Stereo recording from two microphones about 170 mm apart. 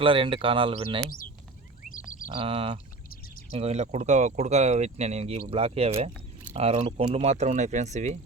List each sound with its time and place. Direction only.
0.0 s speech: 30° right (ahead or behind)
1.8 s a sound: 50° left (ahead or behind)
2.3 s speech: 35° right (ahead or behind)